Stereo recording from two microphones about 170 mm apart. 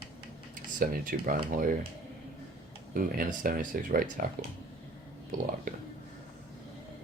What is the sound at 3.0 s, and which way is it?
Speech, 55° right (ahead or behind).